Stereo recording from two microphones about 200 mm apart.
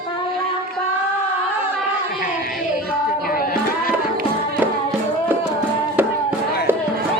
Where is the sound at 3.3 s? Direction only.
45° left (ahead or behind).